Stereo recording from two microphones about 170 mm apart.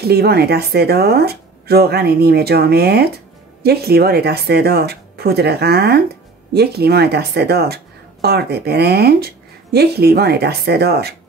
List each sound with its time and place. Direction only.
0.0 s speech: 70° right (ahead or behind)